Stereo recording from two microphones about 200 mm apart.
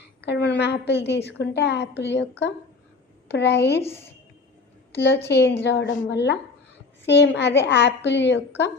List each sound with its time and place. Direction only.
0.3 s a woman's voice: 55° left (ahead or behind)
4.9 s a woman's voice: 60° left (ahead or behind)